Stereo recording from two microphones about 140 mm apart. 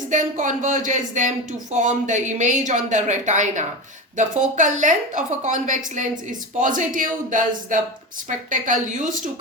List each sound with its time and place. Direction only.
0.1 s speech: 65° right (ahead or behind)